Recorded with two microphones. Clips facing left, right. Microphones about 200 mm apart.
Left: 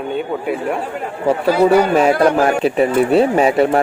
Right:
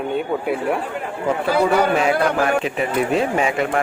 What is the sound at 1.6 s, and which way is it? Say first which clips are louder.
Speech: left 6 dB; 40° left (ahead or behind).